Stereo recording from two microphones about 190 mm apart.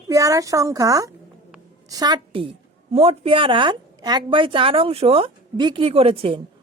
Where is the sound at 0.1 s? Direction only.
15° right (ahead or behind).